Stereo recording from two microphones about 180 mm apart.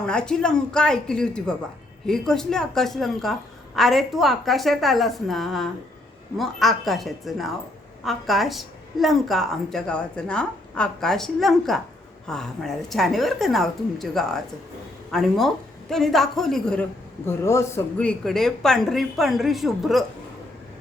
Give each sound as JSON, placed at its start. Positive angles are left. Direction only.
{"t": 0.0, "sound": "a woman's voice", "side_deg": 5}
{"t": 17.2, "sound": "a woman's voice", "side_deg": 15}